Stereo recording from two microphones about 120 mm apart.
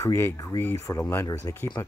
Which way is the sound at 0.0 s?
20° left (ahead or behind).